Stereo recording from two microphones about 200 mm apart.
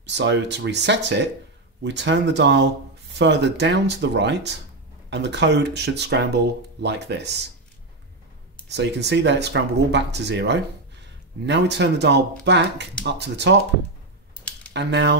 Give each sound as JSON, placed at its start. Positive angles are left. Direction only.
{"t": 0.0, "sound": "speech", "side_deg": -65}
{"t": 8.6, "sound": "speech", "side_deg": -60}
{"t": 14.7, "sound": "speech", "side_deg": -60}